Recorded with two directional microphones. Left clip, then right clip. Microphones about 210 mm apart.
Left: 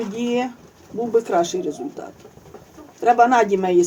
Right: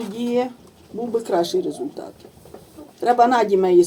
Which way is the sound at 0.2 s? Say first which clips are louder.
Right 2 dB; 15° right (ahead or behind).